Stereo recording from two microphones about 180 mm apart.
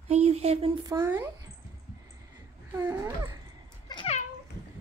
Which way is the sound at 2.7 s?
15° right (ahead or behind).